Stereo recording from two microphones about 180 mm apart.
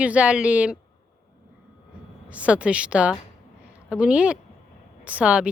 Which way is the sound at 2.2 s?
5° right (ahead or behind).